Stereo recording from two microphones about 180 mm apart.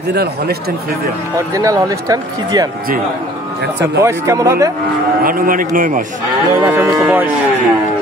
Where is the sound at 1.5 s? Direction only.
20° right (ahead or behind).